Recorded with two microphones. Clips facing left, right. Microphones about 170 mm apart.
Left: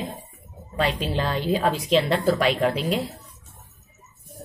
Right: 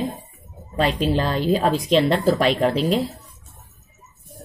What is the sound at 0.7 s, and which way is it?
Speech, 40° right (ahead or behind).